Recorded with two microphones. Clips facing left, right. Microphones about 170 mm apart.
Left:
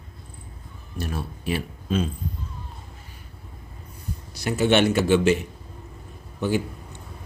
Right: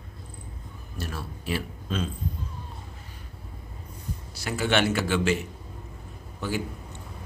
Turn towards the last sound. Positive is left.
turn(degrees=20)  # may be behind; listen again after turning